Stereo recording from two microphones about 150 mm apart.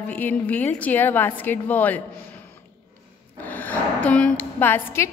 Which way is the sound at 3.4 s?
10° left (ahead or behind).